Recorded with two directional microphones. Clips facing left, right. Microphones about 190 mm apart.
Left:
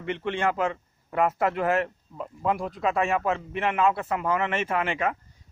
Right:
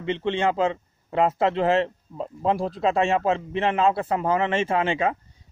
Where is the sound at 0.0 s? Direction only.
25° right (ahead or behind).